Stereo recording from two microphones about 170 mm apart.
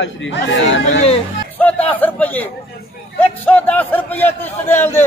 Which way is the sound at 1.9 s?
10° left (ahead or behind).